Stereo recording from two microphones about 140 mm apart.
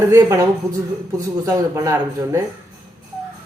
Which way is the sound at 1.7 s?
20° right (ahead or behind).